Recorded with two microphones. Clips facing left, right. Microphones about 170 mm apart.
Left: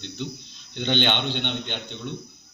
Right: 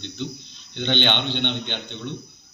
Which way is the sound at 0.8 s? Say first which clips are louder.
Even; 5° left (ahead or behind).